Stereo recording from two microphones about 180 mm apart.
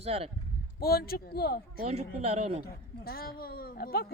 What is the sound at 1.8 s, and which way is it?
Speech, 35° right (ahead or behind).